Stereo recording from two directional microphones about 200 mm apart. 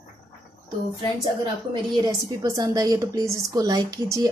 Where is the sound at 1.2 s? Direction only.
25° right (ahead or behind).